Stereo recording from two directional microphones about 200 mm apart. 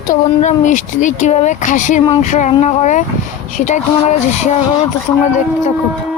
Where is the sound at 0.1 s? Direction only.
40° left (ahead or behind).